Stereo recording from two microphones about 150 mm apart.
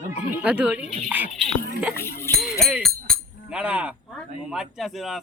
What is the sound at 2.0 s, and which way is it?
Speech, 15° left (ahead or behind).